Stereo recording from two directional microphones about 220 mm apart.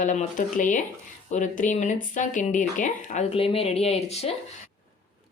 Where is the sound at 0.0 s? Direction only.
35° left (ahead or behind).